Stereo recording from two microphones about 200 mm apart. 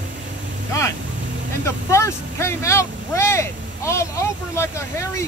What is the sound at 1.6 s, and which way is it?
Speech, 15° left (ahead or behind).